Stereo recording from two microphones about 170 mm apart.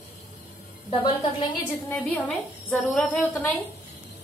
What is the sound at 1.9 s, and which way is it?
A woman's voice, 10° left (ahead or behind).